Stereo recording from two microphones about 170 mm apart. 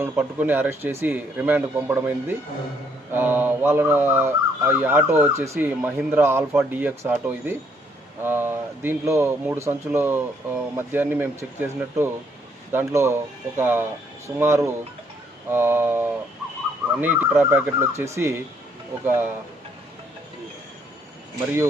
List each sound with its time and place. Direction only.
0.0 s speech: 10° right (ahead or behind)